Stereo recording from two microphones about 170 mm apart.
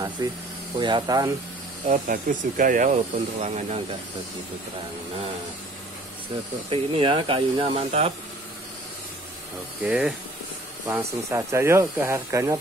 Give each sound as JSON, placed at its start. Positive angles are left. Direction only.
{"t": 0.2, "sound": "speech", "side_deg": -20}
{"t": 1.9, "sound": "speech", "side_deg": -55}
{"t": 6.7, "sound": "speech", "side_deg": -30}
{"t": 9.8, "sound": "speech", "side_deg": -5}
{"t": 10.9, "sound": "speech", "side_deg": -15}